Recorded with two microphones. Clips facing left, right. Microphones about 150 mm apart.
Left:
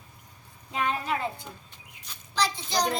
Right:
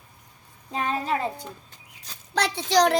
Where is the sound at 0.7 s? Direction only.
35° right (ahead or behind).